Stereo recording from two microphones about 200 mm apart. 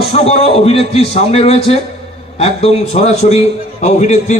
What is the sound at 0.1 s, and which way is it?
A man's voice, 30° left (ahead or behind).